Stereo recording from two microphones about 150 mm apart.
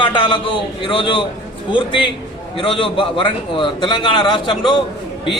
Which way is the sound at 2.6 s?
35° left (ahead or behind).